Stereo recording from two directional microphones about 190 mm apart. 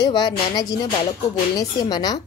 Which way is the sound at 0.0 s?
20° left (ahead or behind).